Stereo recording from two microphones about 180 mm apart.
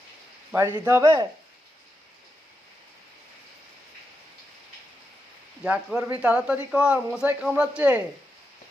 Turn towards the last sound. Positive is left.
turn(degrees=-5)  # may be behind; listen again after turning